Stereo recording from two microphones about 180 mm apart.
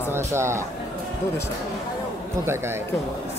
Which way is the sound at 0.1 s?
15° right (ahead or behind).